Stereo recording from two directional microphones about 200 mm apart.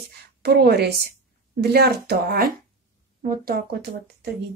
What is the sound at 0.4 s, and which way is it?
Speech, 55° right (ahead or behind).